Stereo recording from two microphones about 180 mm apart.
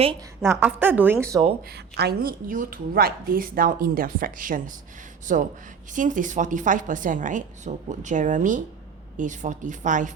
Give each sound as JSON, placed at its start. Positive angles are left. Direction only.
{"t": 0.5, "sound": "a woman's voice", "side_deg": -10}
{"t": 1.7, "sound": "a woman's voice", "side_deg": -65}